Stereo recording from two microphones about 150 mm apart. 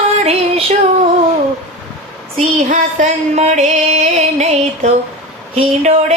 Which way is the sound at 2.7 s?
55° right (ahead or behind).